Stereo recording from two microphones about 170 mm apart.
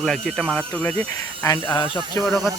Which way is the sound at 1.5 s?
25° left (ahead or behind).